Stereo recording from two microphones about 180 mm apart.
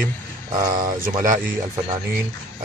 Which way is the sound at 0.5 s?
20° right (ahead or behind).